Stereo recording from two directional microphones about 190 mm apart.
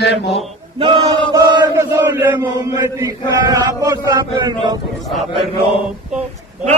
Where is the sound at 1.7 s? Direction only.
15° right (ahead or behind).